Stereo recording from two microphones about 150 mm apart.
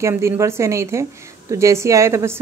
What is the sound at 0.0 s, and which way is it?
A woman's voice, 20° right (ahead or behind).